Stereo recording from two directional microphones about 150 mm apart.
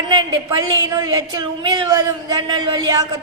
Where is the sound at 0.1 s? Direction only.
30° right (ahead or behind).